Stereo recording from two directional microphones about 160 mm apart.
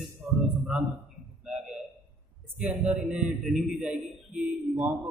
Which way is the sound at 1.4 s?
5° right (ahead or behind).